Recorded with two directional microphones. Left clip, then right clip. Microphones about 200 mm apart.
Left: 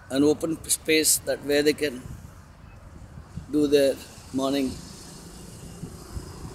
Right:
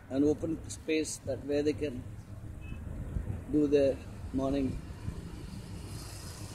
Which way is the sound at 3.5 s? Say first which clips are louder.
Left 6 dB; 15° left (ahead or behind).